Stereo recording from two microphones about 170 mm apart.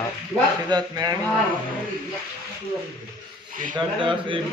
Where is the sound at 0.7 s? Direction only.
25° right (ahead or behind).